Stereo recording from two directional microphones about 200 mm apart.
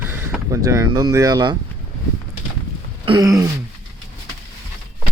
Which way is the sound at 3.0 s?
20° right (ahead or behind).